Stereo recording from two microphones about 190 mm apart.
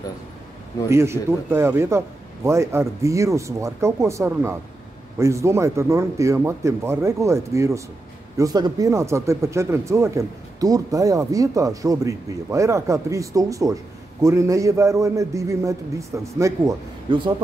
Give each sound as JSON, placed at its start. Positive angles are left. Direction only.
{"t": 0.8, "sound": "speech", "side_deg": -15}